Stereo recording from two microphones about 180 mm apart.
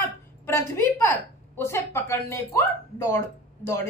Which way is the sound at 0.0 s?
15° left (ahead or behind).